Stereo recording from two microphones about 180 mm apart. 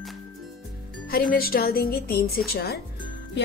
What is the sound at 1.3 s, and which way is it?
A woman's voice, 55° left (ahead or behind).